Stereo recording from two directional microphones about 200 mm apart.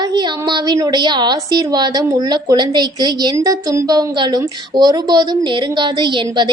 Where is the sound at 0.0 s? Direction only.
20° right (ahead or behind).